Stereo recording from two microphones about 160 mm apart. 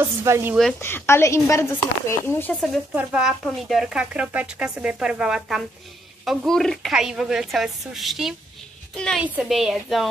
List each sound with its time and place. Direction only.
0.0 s speech: 15° right (ahead or behind)
0.7 s speech: 15° left (ahead or behind)
3.0 s speech: 5° right (ahead or behind)